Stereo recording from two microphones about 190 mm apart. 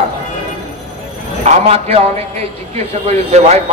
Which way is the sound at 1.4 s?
35° right (ahead or behind).